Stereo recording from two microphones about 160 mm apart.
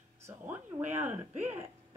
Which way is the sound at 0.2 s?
10° right (ahead or behind).